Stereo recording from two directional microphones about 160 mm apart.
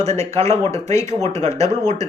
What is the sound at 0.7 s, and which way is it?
Speech, 15° left (ahead or behind).